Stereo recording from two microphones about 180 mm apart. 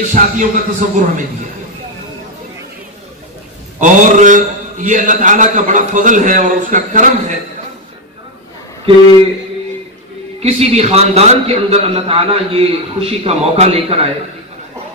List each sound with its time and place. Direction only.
0.1 s a man's voice: 45° right (ahead or behind)
3.8 s a man's voice: 45° right (ahead or behind)
10.4 s a man's voice: 35° right (ahead or behind)